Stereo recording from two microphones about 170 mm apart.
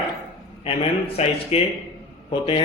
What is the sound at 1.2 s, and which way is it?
Speech, 40° left (ahead or behind).